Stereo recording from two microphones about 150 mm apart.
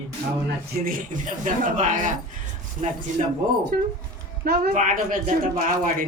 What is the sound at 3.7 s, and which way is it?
A woman's voice, 80° right.